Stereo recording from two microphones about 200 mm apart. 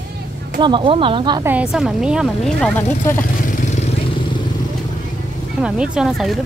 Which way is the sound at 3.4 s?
35° left (ahead or behind).